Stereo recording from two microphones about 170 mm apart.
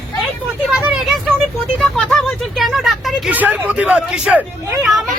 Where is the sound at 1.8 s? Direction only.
Centre (ahead or behind).